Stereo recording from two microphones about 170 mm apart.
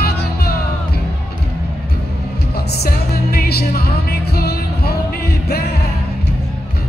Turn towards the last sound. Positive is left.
turn(degrees=70)  # may be behind; listen again after turning